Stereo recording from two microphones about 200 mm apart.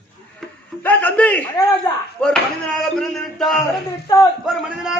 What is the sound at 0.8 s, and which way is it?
Speech, 10° left (ahead or behind).